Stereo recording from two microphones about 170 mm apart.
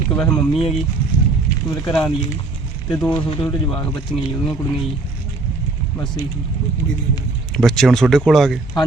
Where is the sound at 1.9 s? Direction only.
5° left (ahead or behind).